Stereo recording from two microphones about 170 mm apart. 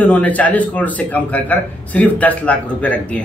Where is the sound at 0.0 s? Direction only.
10° left (ahead or behind).